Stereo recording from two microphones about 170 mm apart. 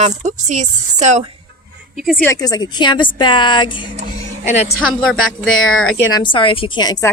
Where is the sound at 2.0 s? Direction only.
Centre (ahead or behind).